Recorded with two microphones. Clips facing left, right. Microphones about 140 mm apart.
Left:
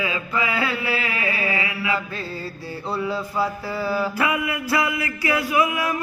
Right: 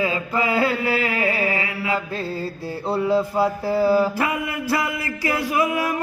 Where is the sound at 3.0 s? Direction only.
45° right (ahead or behind).